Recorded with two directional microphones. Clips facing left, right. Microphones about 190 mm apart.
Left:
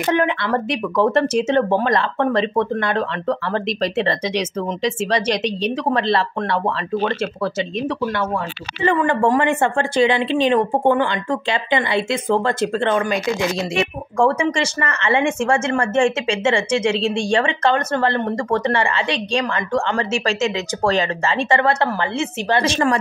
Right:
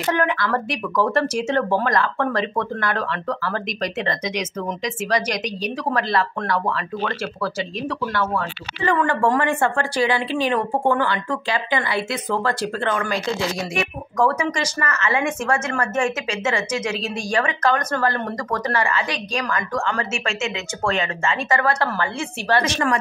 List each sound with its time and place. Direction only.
0.0 s a woman's voice: 20° left (ahead or behind)